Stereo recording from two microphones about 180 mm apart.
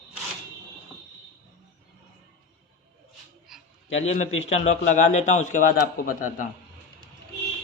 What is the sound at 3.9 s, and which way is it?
Speech, 90° left.